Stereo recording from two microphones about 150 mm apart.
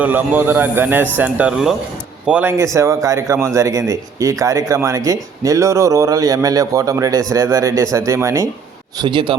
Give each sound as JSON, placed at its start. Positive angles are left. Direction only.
{"t": 0.0, "sound": "a man's voice", "side_deg": -10}
{"t": 9.0, "sound": "a man's voice", "side_deg": -35}